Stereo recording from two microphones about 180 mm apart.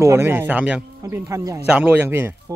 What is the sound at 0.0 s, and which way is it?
Speech, 15° right (ahead or behind).